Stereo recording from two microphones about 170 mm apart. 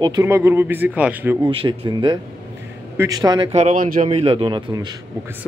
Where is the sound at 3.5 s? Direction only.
45° right (ahead or behind); by 4.9 s 25° right (ahead or behind).